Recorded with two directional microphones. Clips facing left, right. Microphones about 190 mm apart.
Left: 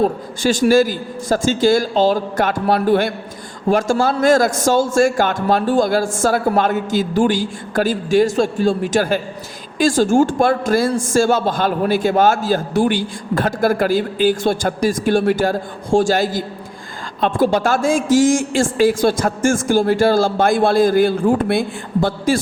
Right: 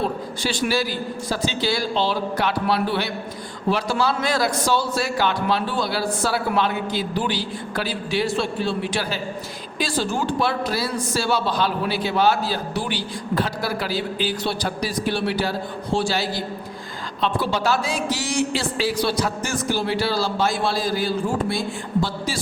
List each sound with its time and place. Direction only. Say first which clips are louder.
0.0 s a woman's voice: left 8 dB; 45° left (ahead or behind)